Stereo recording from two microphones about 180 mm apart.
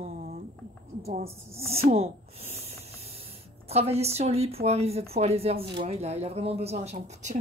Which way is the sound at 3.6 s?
35° right (ahead or behind).